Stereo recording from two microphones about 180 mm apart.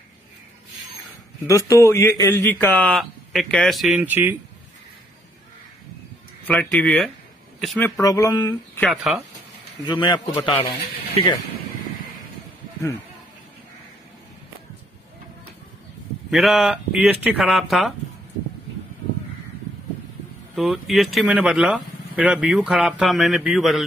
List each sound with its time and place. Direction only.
1.4 s speech: 15° left (ahead or behind); by 4.4 s 10° right (ahead or behind)
6.4 s speech: 10° left (ahead or behind)
8.0 s a sound: 20° left (ahead or behind)
8.7 s speech: centre (ahead or behind)
9.8 s a sound: 25° left (ahead or behind)
10.3 s a man's voice: 35° left (ahead or behind)
16.3 s speech: centre (ahead or behind)
20.5 s speech: centre (ahead or behind)